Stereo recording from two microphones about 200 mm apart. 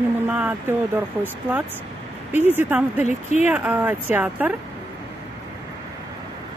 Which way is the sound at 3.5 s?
10° right (ahead or behind).